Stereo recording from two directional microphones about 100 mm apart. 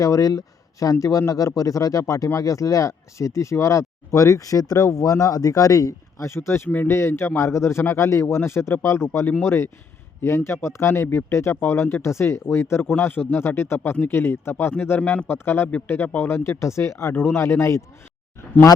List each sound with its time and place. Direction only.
0.0 s speech: 35° left (ahead or behind)